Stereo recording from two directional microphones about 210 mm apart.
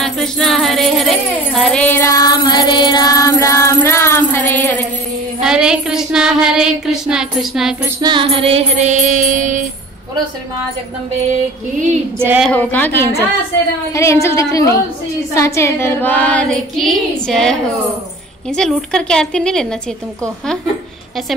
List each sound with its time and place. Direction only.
0.0 s music: centre (ahead or behind)
4.3 s a sound: 10° left (ahead or behind)
5.4 s child singing: 5° right (ahead or behind)
8.0 s music: 25° right (ahead or behind); by 9.7 s 40° right (ahead or behind)
12.2 s speech: 10° right (ahead or behind)
12.4 s child singing: 5° left (ahead or behind)
18.6 s child singing: 5° left (ahead or behind)